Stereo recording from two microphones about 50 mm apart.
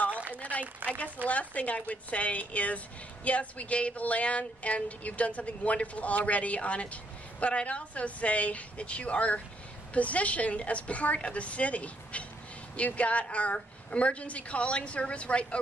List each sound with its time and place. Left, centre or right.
0.3 s speech: left